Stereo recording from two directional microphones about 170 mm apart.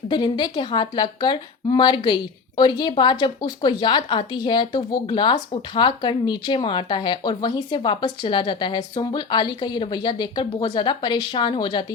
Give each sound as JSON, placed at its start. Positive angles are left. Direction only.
{"t": 0.1, "sound": "speech", "side_deg": 25}